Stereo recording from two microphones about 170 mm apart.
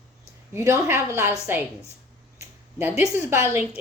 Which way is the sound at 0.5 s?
15° right (ahead or behind).